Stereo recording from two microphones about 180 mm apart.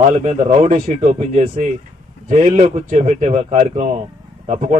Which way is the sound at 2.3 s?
45° right (ahead or behind).